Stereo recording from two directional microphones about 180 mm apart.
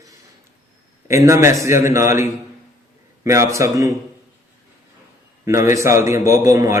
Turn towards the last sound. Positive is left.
turn(degrees=-15)  # may be behind; listen again after turning